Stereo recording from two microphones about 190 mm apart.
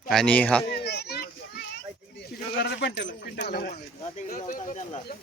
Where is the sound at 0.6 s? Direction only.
55° left (ahead or behind).